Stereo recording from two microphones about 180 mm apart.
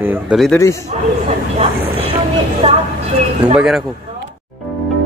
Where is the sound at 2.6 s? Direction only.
30° right (ahead or behind).